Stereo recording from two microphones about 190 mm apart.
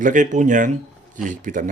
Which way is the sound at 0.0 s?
45° right (ahead or behind).